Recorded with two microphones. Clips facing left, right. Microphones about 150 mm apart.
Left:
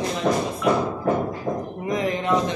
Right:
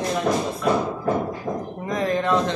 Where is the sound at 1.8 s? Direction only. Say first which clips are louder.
Right 1 dB; 15° left (ahead or behind).